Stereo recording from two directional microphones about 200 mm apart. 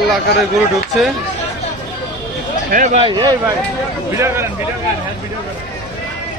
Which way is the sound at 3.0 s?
20° right (ahead or behind).